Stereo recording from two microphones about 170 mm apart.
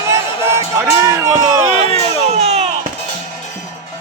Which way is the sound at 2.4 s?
40° right (ahead or behind).